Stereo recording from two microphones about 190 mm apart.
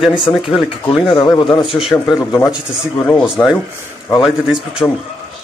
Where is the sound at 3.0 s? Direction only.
10° left (ahead or behind).